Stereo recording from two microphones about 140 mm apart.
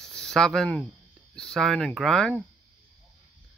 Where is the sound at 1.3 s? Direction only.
5° left (ahead or behind).